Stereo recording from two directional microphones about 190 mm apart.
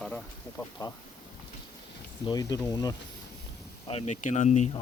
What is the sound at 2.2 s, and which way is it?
Speech, 20° left (ahead or behind).